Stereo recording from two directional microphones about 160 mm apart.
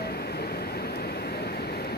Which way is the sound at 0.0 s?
85° left.